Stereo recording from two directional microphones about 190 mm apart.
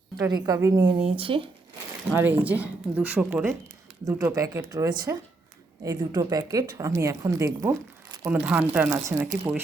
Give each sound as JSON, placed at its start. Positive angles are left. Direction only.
{"t": 0.2, "sound": "speech", "side_deg": -20}
{"t": 1.0, "sound": "speech", "side_deg": -30}
{"t": 2.0, "sound": "speech", "side_deg": -10}